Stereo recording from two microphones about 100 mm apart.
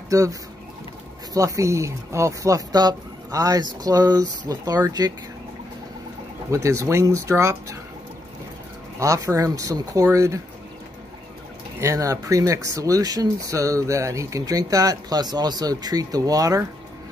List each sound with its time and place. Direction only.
0.1 s speech: 35° right (ahead or behind)
6.5 s speech: 30° right (ahead or behind)
9.0 s speech: 30° right (ahead or behind)
11.8 s speech: 30° right (ahead or behind)